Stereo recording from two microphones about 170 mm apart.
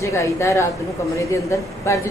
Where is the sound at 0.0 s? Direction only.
15° left (ahead or behind).